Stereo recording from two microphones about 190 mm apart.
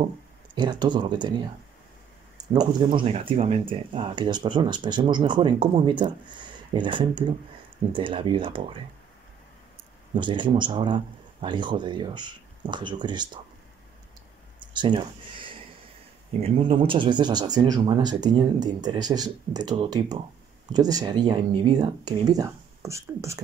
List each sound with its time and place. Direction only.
0.6 s speech: 25° right (ahead or behind)
2.5 s speech: 25° right (ahead or behind)
10.1 s speech: 25° right (ahead or behind)
14.6 s a sound: 25° right (ahead or behind)
16.4 s speech: 30° right (ahead or behind)